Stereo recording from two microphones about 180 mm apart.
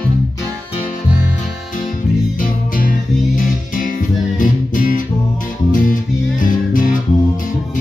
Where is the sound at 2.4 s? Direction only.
50° left (ahead or behind).